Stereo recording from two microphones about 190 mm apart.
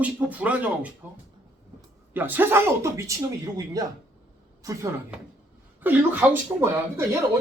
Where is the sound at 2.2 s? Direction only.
10° right (ahead or behind).